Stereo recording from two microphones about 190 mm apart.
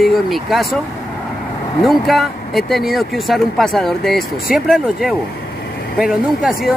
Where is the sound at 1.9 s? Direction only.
Centre (ahead or behind).